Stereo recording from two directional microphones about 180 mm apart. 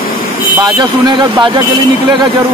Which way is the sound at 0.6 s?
20° right (ahead or behind).